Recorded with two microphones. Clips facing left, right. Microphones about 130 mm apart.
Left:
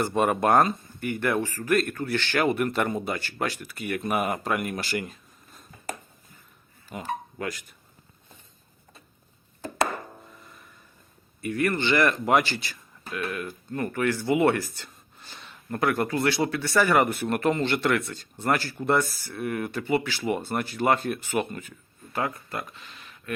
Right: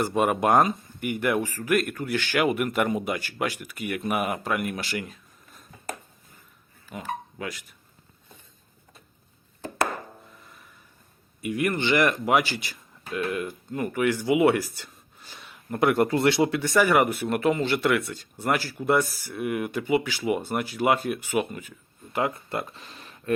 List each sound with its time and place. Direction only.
0.0 s speech: 10° right (ahead or behind)
6.9 s speech: centre (ahead or behind)
10.4 s a sound: centre (ahead or behind)
11.3 s speech: 15° right (ahead or behind)
15.8 s speech: 25° right (ahead or behind); by 21.7 s 5° right (ahead or behind)
22.1 s speech: 20° right (ahead or behind)